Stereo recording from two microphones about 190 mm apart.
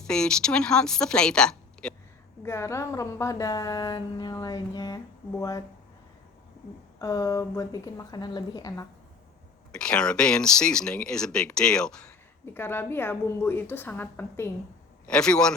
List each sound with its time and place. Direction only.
0.0 s a woman's voice: 5° left (ahead or behind)
7.0 s a woman's voice: 20° left (ahead or behind)
9.7 s a woman's voice: 5° left (ahead or behind)